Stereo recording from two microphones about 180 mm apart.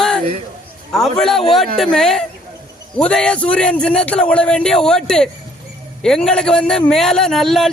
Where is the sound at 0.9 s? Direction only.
Centre (ahead or behind).